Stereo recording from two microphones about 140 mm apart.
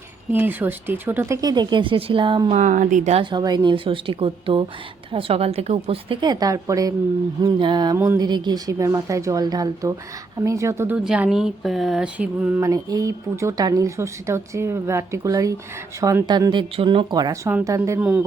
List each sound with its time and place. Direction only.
0.3 s speech: 15° right (ahead or behind); by 2.5 s 35° right (ahead or behind)
2.5 s speech: 60° right (ahead or behind)
3.2 s a woman's voice: 35° right (ahead or behind)
7.9 s speech: 20° right (ahead or behind)
8.3 s speech: 30° right (ahead or behind)
10.9 s speech: 5° right (ahead or behind)
12.5 s a woman's voice: 25° right (ahead or behind)
18.0 s speech: 10° right (ahead or behind)